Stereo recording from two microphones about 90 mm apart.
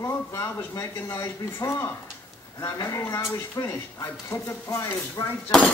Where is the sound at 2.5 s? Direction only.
40° left (ahead or behind).